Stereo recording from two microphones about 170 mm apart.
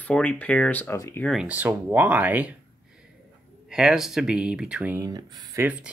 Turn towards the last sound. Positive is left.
turn(degrees=-20)  # may be behind; listen again after turning